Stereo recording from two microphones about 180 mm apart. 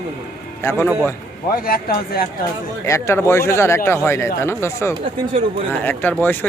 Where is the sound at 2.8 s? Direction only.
15° left (ahead or behind).